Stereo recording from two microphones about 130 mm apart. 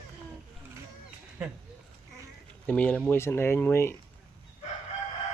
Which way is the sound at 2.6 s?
10° left (ahead or behind).